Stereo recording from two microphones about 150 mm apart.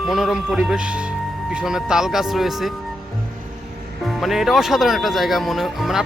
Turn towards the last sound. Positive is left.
turn(degrees=0)  # may be behind; listen again after turning